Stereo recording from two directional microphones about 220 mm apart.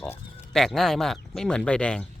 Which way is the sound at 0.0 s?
Centre (ahead or behind).